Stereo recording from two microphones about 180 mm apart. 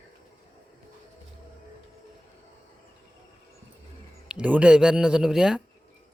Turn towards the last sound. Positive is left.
turn(degrees=-5)  # may be behind; listen again after turning